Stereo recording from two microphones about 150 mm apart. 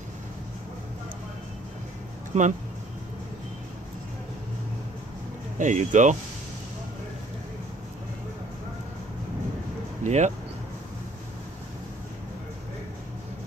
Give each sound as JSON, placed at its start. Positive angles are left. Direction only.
{"t": 2.3, "sound": "speech", "side_deg": -45}
{"t": 5.6, "sound": "speech", "side_deg": -55}
{"t": 10.0, "sound": "speech", "side_deg": -50}